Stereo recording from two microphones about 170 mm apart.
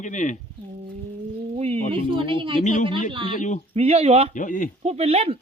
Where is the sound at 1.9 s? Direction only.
30° right (ahead or behind).